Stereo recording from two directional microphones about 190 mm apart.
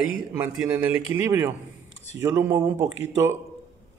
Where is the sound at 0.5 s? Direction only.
10° right (ahead or behind).